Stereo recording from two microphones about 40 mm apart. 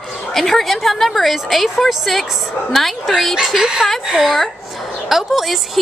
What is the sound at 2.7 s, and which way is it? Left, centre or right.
Speech, centre.